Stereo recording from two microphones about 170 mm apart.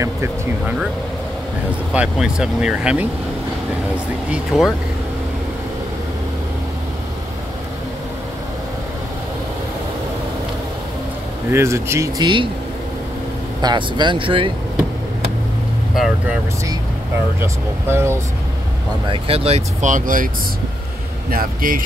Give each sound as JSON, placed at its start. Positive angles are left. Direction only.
{"t": 0.0, "sound": "speech", "side_deg": -15}
{"t": 2.0, "sound": "speech", "side_deg": -5}
{"t": 11.5, "sound": "speech", "side_deg": -15}
{"t": 13.6, "sound": "speech", "side_deg": -25}
{"t": 15.9, "sound": "speech", "side_deg": 0}
{"t": 17.4, "sound": "speech", "side_deg": -15}
{"t": 19.0, "sound": "speech", "side_deg": -30}
{"t": 21.3, "sound": "speech", "side_deg": -55}